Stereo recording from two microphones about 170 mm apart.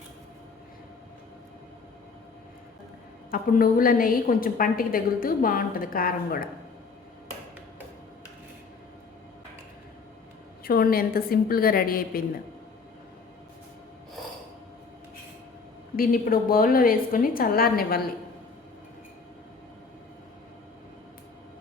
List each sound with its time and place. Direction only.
3.3 s a woman's voice: 55° left (ahead or behind)
10.6 s a woman's voice: 60° left (ahead or behind)
16.0 s a woman's voice: 60° left (ahead or behind)